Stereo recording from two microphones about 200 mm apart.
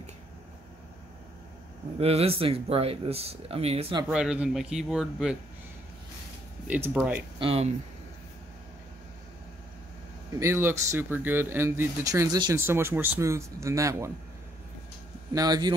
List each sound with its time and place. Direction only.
2.0 s speech: 30° right (ahead or behind)
4.1 s speech: 5° right (ahead or behind)
6.7 s speech: 5° right (ahead or behind)
7.3 s speech: 30° right (ahead or behind)
10.4 s speech: 10° right (ahead or behind)
15.3 s speech: 20° right (ahead or behind)